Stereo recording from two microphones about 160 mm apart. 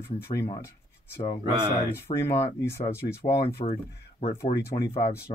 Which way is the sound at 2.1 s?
40° left (ahead or behind).